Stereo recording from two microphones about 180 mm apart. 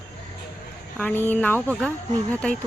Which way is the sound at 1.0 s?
10° left (ahead or behind).